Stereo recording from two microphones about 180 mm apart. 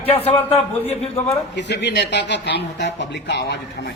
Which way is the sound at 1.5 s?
70° left (ahead or behind).